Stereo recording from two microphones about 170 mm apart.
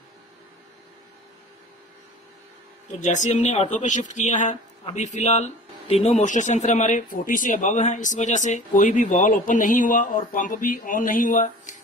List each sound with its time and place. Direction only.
2.9 s speech: 45° left (ahead or behind)